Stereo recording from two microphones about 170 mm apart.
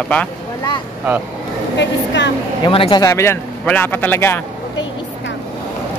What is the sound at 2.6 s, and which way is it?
Speech, 30° left (ahead or behind).